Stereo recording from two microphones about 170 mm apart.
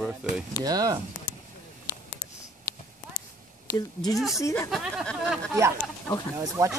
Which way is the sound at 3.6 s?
20° left (ahead or behind).